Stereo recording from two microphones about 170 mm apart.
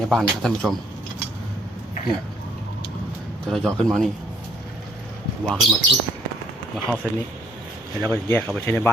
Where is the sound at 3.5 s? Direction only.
5° left (ahead or behind).